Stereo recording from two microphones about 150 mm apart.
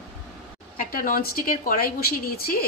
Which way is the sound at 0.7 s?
65° left (ahead or behind).